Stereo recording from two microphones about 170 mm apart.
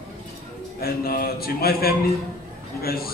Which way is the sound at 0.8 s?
60° left (ahead or behind).